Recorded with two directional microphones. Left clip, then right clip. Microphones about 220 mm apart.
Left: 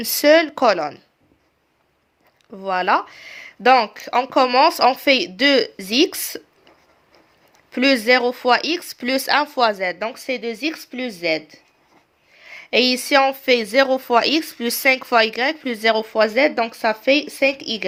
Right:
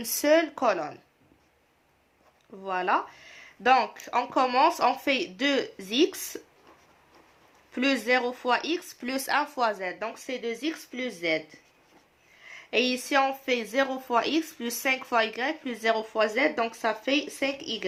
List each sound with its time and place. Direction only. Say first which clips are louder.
0.0 s speech: left 9 dB; 40° left (ahead or behind)
2.5 s speech: left 8 dB; 45° left (ahead or behind)
7.7 s speech: left 9 dB; 40° left (ahead or behind)